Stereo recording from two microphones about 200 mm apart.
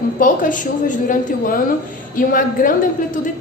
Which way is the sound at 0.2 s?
40° left (ahead or behind).